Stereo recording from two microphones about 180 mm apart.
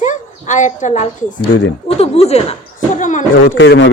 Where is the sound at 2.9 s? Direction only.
45° left (ahead or behind).